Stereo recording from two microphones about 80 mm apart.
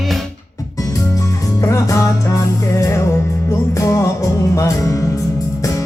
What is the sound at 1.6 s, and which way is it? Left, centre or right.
Music, left.